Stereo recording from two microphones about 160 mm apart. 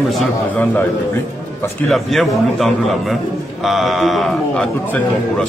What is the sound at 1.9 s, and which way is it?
Speech, centre (ahead or behind).